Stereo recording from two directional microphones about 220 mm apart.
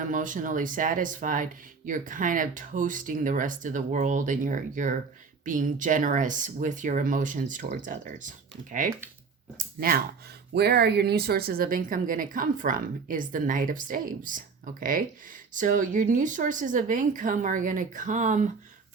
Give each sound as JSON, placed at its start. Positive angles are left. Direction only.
{"t": 0.0, "sound": "speech", "side_deg": -35}